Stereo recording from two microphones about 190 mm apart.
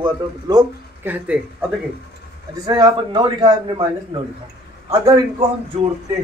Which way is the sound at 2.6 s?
20° right (ahead or behind).